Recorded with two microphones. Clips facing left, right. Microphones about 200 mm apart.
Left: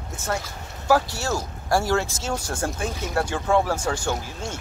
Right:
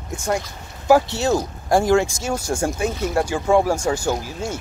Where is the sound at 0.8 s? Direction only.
20° right (ahead or behind).